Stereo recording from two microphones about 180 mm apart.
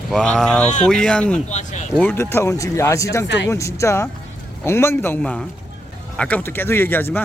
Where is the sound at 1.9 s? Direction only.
10° left (ahead or behind).